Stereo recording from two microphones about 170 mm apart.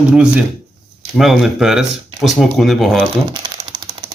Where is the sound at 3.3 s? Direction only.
25° right (ahead or behind).